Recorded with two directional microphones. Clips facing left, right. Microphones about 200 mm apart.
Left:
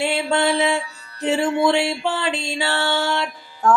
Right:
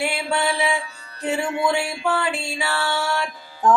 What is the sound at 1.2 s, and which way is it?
Music, 25° left (ahead or behind).